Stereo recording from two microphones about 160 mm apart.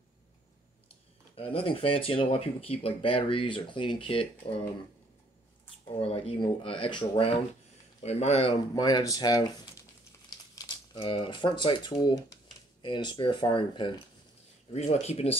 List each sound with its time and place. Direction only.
1.3 s speech: 35° left (ahead or behind)
5.9 s speech: 35° left (ahead or behind)
8.7 s speech: 25° left (ahead or behind)
14.7 s speech: 45° left (ahead or behind)